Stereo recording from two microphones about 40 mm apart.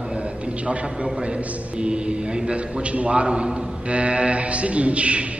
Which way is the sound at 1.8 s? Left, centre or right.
Right.